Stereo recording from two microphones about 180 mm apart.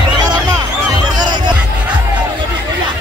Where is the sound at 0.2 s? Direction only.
20° right (ahead or behind).